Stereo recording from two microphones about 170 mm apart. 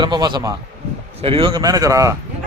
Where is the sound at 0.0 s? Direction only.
25° right (ahead or behind).